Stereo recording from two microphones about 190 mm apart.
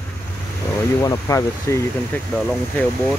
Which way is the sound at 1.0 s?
15° left (ahead or behind).